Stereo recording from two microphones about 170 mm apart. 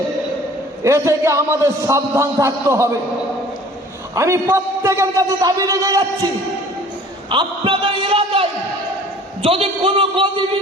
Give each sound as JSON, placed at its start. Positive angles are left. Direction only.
{"t": 0.9, "sound": "a man's voice", "side_deg": -15}
{"t": 4.1, "sound": "a man's voice", "side_deg": -15}
{"t": 7.3, "sound": "a sound", "side_deg": -30}
{"t": 9.4, "sound": "a man's voice", "side_deg": -35}